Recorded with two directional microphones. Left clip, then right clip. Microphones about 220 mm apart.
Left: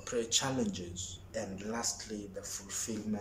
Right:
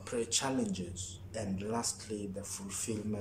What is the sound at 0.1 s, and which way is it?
A man's voice, centre (ahead or behind).